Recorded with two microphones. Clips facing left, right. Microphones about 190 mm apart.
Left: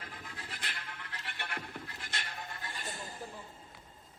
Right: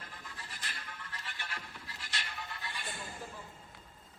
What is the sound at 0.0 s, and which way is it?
Music, 60° left (ahead or behind).